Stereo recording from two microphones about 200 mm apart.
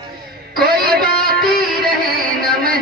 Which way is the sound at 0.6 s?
50° right (ahead or behind).